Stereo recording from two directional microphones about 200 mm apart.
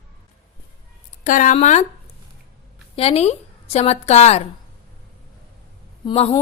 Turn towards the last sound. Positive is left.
turn(degrees=30)  # may be behind; listen again after turning